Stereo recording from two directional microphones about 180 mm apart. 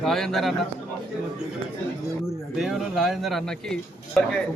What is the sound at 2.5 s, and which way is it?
Speech, centre (ahead or behind).